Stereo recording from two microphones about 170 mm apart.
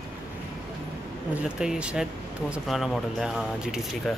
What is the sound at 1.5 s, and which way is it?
Speech, 5° right (ahead or behind).